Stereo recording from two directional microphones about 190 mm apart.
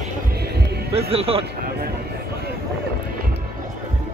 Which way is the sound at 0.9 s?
30° right (ahead or behind).